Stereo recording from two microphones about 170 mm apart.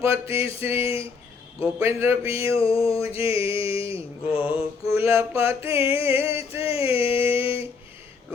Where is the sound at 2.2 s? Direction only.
35° left (ahead or behind).